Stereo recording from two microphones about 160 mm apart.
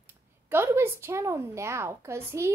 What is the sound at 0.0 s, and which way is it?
Speech, 15° right (ahead or behind).